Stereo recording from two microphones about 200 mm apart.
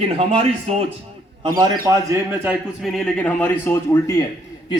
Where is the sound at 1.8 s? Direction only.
10° right (ahead or behind).